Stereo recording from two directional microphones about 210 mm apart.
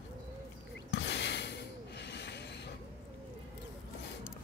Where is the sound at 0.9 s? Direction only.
55° left (ahead or behind).